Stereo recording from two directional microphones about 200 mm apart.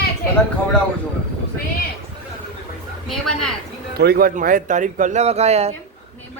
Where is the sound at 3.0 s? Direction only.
Centre (ahead or behind).